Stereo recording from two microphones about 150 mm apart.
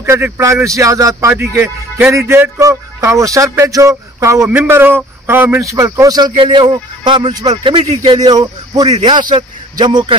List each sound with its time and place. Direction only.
0.0 s speech: 20° right (ahead or behind); by 7.8 s 35° right (ahead or behind)
7.8 s speech: 45° right (ahead or behind)
8.1 s a man's voice: 25° right (ahead or behind)